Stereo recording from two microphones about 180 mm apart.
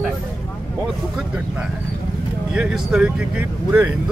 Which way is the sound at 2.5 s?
5° right (ahead or behind).